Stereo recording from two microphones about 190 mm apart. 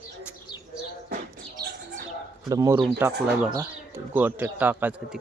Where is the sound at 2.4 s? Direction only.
20° right (ahead or behind).